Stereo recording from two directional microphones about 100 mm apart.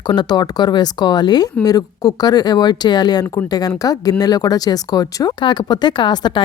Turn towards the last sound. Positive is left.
turn(degrees=45)  # may be behind; listen again after turning